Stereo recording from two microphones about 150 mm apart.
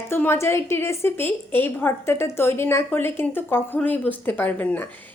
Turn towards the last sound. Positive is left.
turn(degrees=10)  # may be behind; listen again after turning